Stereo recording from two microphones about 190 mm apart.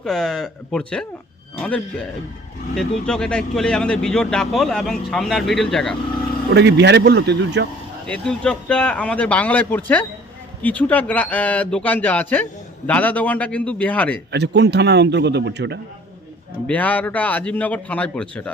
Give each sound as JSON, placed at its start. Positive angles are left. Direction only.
{"t": 0.0, "sound": "speech", "side_deg": 0}
{"t": 6.5, "sound": "a man's voice", "side_deg": -65}
{"t": 8.0, "sound": "speech", "side_deg": 5}
{"t": 14.3, "sound": "a man's voice", "side_deg": -65}
{"t": 16.6, "sound": "speech", "side_deg": 10}